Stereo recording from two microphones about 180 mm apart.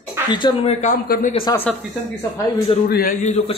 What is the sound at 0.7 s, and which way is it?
Speech, 50° left (ahead or behind).